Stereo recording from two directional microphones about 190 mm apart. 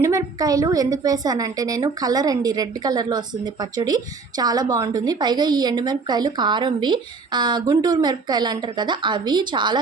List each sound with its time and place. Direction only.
0.0 s a woman's voice: 15° right (ahead or behind)